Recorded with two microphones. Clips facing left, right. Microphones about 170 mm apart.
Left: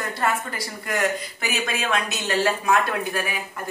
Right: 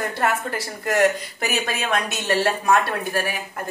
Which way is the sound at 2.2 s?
35° right (ahead or behind).